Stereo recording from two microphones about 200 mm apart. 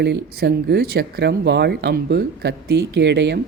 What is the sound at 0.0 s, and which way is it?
Speech, 55° right (ahead or behind).